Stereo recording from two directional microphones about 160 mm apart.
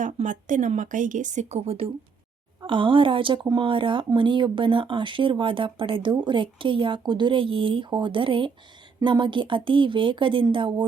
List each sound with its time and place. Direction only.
0.0 s a woman's voice: 50° right (ahead or behind); by 10.8 s 30° right (ahead or behind)